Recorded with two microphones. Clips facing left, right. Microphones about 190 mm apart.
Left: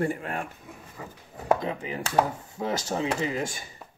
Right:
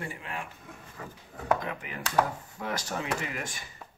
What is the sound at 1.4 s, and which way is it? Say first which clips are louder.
Speech: left 4 dB; 30° left (ahead or behind).